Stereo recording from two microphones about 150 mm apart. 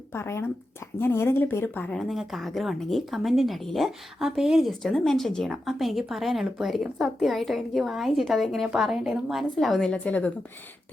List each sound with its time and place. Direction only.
0.1 s speech: 15° left (ahead or behind)